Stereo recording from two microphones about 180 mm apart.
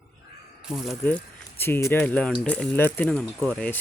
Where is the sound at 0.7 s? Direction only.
Centre (ahead or behind).